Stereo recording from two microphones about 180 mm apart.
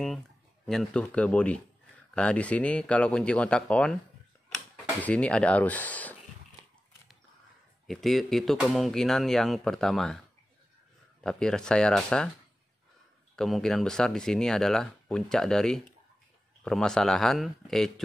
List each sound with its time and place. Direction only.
0.7 s speech: 5° left (ahead or behind)
5.0 s speech: 5° left (ahead or behind)
7.8 s speech: centre (ahead or behind)
11.2 s speech: 5° left (ahead or behind)
13.4 s speech: centre (ahead or behind)